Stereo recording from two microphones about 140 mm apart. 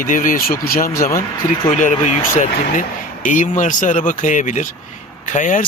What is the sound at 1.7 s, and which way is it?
Speech, 65° left (ahead or behind).